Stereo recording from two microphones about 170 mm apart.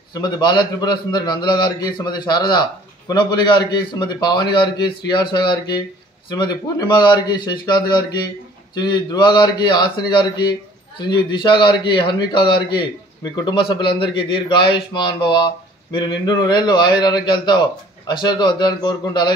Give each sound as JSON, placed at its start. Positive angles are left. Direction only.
{"t": 0.1, "sound": "a man's voice", "side_deg": 25}